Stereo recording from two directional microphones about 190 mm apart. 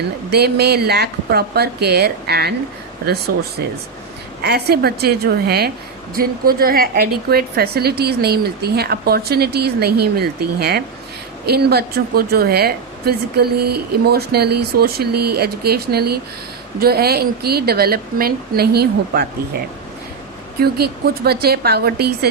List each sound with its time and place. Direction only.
0.3 s a woman's voice: 60° right (ahead or behind)
4.4 s a woman's voice: 55° right (ahead or behind)
20.6 s a woman's voice: 55° right (ahead or behind)